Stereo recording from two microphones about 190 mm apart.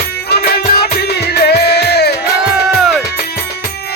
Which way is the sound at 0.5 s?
55° left (ahead or behind).